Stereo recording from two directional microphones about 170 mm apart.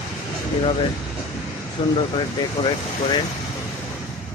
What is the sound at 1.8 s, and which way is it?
Speech, 25° left (ahead or behind).